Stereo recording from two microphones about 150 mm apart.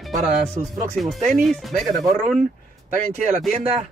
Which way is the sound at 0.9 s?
Centre (ahead or behind).